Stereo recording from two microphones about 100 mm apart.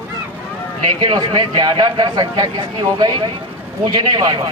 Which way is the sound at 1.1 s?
45° right (ahead or behind).